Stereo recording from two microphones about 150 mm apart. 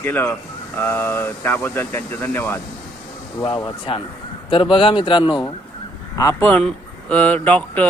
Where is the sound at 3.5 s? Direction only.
30° left (ahead or behind).